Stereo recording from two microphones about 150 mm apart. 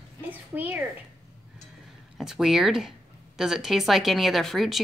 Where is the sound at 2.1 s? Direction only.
5° right (ahead or behind).